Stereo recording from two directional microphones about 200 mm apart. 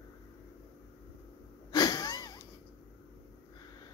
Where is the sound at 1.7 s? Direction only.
20° left (ahead or behind).